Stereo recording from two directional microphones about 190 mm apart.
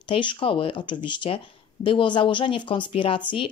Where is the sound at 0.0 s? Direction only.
25° left (ahead or behind).